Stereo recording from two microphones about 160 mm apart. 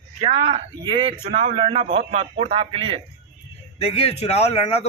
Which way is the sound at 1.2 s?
40° right (ahead or behind).